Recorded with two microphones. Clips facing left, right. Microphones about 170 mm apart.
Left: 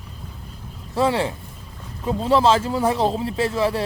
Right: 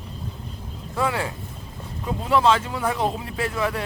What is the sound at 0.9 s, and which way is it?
Speech, 30° left (ahead or behind).